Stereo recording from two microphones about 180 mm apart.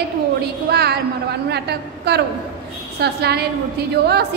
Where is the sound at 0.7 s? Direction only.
60° right (ahead or behind).